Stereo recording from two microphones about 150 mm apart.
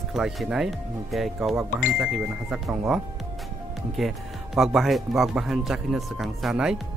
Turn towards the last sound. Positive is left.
turn(degrees=-5)  # may be behind; listen again after turning